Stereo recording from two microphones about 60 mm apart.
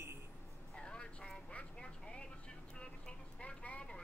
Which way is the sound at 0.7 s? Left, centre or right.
Centre.